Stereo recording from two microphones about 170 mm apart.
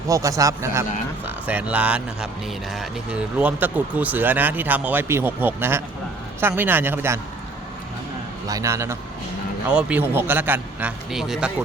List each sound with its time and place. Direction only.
0.1 s speech: 20° right (ahead or behind)
8.4 s speech: 20° right (ahead or behind)